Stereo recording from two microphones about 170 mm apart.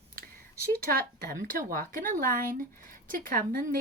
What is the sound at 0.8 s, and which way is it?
Speech, 60° right (ahead or behind).